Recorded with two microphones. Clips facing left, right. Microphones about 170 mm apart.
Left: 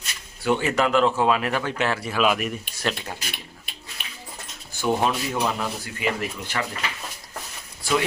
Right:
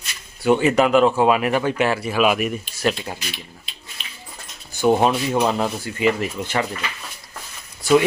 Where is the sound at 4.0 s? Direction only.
55° left (ahead or behind).